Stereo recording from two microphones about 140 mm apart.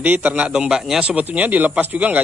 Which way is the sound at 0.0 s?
10° right (ahead or behind).